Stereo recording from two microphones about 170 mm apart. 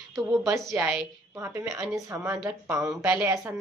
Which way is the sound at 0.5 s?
10° right (ahead or behind).